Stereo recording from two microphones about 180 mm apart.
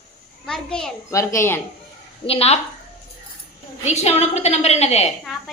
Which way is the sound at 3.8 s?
40° left (ahead or behind).